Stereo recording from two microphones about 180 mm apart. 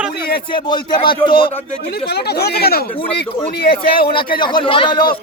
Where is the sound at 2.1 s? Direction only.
65° left (ahead or behind).